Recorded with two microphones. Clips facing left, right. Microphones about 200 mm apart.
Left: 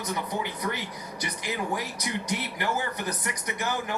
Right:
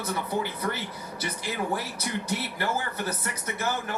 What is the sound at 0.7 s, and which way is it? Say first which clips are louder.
Speech: even; 15° left (ahead or behind).